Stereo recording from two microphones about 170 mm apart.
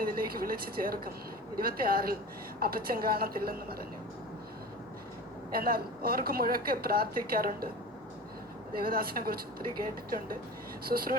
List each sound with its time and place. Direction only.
0.0 s a woman's voice: 60° right (ahead or behind)
5.5 s a woman's voice: 60° right (ahead or behind)
8.8 s a woman's voice: 60° right (ahead or behind)
10.8 s a woman's voice: 60° right (ahead or behind)